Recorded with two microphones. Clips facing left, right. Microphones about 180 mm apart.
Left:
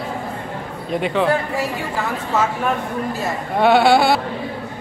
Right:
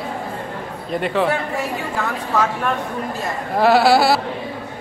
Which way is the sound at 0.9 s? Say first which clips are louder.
Even; centre (ahead or behind).